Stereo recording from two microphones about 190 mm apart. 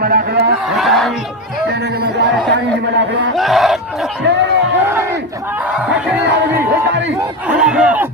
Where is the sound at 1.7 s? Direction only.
55° right (ahead or behind).